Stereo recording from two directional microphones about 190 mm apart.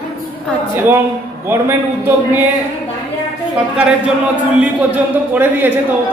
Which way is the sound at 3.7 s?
10° right (ahead or behind).